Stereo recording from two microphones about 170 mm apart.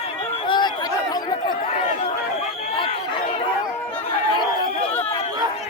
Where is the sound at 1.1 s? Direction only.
25° left (ahead or behind).